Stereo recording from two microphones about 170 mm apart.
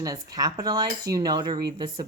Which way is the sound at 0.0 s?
20° right (ahead or behind).